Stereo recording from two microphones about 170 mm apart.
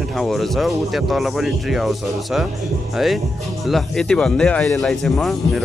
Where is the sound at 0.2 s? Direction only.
Centre (ahead or behind).